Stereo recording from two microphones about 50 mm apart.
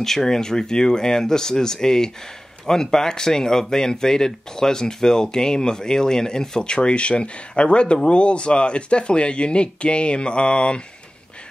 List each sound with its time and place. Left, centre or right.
0.0 s speech: centre